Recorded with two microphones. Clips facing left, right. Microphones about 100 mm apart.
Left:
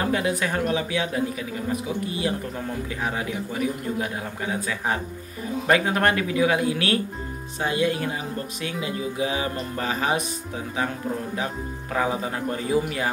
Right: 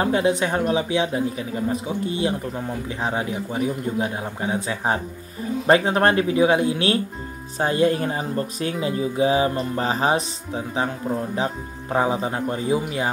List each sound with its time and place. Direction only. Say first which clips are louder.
0.0 s a man's voice: right 4 dB; 25° right (ahead or behind)
7.5 s a man's voice: right 4 dB; 40° right (ahead or behind); by 13.1 s 20° right (ahead or behind)